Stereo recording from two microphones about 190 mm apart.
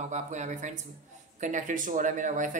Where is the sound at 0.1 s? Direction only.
40° right (ahead or behind).